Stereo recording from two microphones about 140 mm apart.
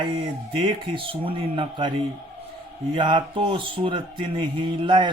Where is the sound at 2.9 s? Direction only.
35° right (ahead or behind).